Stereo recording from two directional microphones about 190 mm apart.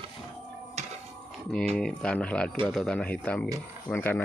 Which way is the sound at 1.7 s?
5° left (ahead or behind).